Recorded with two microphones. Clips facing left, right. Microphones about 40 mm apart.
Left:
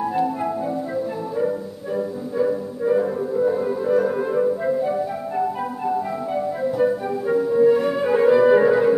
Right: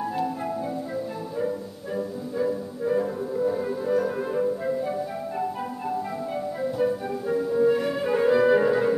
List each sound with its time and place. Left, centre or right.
2.0 s music: centre